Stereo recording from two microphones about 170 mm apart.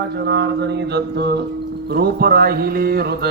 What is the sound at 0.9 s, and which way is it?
Music, 70° right (ahead or behind).